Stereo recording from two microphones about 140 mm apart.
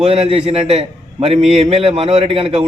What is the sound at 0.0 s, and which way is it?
A man's voice, 45° right (ahead or behind).